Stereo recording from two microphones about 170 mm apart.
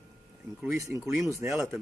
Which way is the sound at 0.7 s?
20° right (ahead or behind).